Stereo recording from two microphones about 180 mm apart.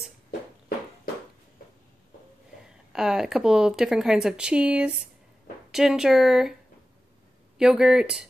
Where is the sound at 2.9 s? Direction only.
5° right (ahead or behind).